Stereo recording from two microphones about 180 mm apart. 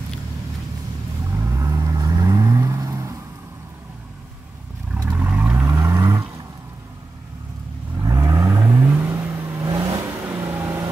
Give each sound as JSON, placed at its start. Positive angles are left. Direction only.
{"t": 1.4, "sound": "vehicle", "side_deg": -15}
{"t": 5.1, "sound": "vehicle", "side_deg": -10}
{"t": 8.0, "sound": "vehicle", "side_deg": -20}